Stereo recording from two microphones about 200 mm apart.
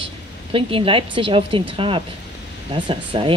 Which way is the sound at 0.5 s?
25° right (ahead or behind).